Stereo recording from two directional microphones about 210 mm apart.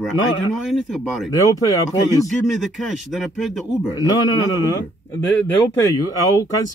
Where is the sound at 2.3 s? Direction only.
Centre (ahead or behind).